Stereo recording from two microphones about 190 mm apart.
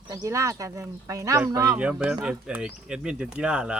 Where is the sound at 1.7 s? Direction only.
5° right (ahead or behind).